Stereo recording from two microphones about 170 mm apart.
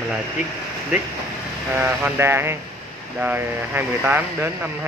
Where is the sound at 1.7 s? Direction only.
10° right (ahead or behind).